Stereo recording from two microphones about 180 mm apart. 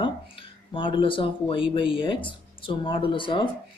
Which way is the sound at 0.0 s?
30° left (ahead or behind).